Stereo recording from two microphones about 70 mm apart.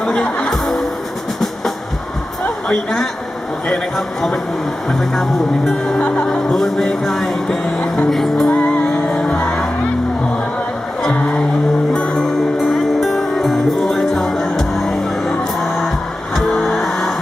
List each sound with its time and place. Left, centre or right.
0.0 s music: centre
2.6 s a man's voice: centre
4.9 s music: centre
6.0 s music: left
6.2 s music: centre
8.4 s music: left
9.1 s music: centre
11.9 s music: centre
16.6 s music: centre